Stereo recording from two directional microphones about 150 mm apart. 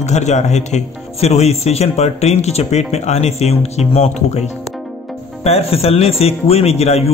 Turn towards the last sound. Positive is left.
turn(degrees=45)  # may be behind; listen again after turning